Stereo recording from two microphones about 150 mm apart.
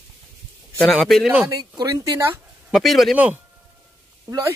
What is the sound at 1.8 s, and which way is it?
Speech, 25° right (ahead or behind).